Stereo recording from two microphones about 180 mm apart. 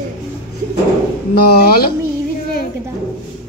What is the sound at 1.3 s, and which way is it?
Yodeling, 60° left (ahead or behind).